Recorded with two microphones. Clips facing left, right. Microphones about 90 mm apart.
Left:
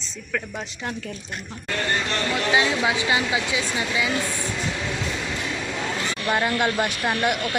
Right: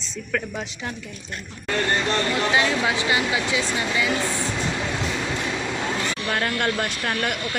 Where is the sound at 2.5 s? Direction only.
20° left (ahead or behind).